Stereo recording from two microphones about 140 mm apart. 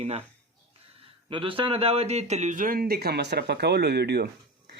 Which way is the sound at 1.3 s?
40° right (ahead or behind).